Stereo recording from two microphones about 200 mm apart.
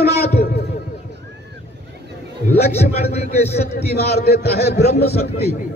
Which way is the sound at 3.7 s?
55° left (ahead or behind).